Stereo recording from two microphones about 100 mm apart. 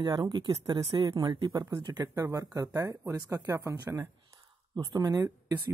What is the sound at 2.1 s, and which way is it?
Speech, 30° right (ahead or behind).